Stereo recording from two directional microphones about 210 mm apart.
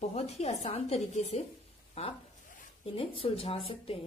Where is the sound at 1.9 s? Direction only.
35° left (ahead or behind).